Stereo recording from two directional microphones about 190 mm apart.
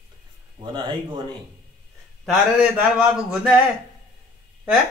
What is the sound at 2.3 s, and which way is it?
A man's voice, 5° right (ahead or behind).